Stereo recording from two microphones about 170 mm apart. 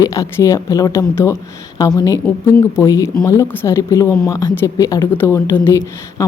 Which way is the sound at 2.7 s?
20° left (ahead or behind).